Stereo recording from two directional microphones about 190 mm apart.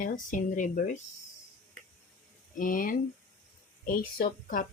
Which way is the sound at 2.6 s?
45° left (ahead or behind).